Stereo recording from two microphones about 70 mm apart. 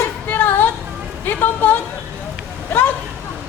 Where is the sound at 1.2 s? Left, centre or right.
Left.